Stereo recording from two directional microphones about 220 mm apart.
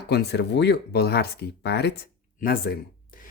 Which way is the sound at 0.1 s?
50° left (ahead or behind).